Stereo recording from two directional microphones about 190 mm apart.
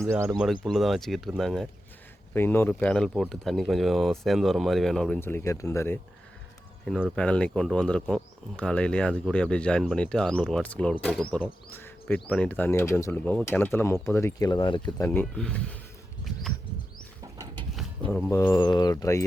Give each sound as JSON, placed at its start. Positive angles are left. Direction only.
{"t": 0.1, "sound": "speech", "side_deg": -15}
{"t": 0.3, "sound": "speech", "side_deg": 0}
{"t": 2.3, "sound": "speech", "side_deg": 10}
{"t": 6.8, "sound": "speech", "side_deg": 0}
{"t": 11.7, "sound": "a sound", "side_deg": 10}
{"t": 12.3, "sound": "speech", "side_deg": 10}
{"t": 18.1, "sound": "speech", "side_deg": 0}
{"t": 18.3, "sound": "speech", "side_deg": 20}